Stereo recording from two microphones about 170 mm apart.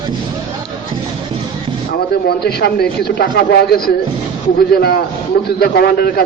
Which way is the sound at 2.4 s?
70° left (ahead or behind).